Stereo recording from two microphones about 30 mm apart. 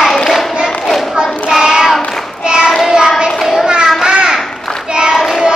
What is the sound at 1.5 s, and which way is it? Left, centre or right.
Child singing, centre.